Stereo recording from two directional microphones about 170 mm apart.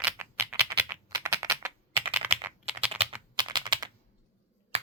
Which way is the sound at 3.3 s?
25° right (ahead or behind).